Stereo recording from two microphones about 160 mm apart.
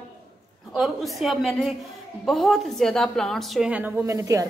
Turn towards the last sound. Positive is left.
turn(degrees=-20)  # may be behind; listen again after turning